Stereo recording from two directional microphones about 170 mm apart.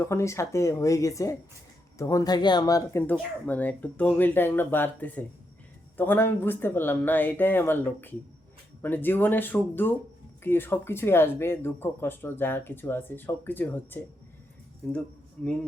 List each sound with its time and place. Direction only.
0.0 s speech: 15° left (ahead or behind)
3.1 s speech: 10° left (ahead or behind)